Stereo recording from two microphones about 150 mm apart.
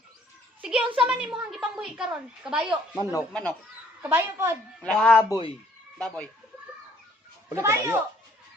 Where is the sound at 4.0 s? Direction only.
15° right (ahead or behind).